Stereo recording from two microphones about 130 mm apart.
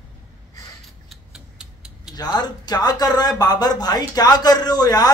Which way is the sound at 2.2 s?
30° left (ahead or behind).